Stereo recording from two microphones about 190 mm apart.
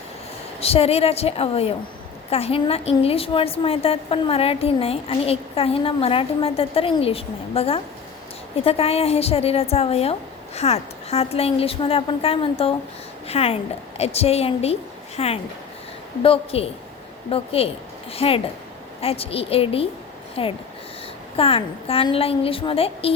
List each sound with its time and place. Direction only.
0.6 s a woman's voice: 30° left (ahead or behind)